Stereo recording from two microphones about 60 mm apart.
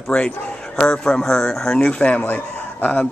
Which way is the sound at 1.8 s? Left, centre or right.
Centre.